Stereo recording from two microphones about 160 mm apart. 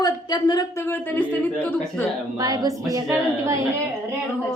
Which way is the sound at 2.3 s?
25° right (ahead or behind).